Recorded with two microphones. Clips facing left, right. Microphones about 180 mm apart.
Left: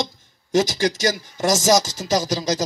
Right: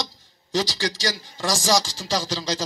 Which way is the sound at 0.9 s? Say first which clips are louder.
Left 6 dB; 45° left (ahead or behind).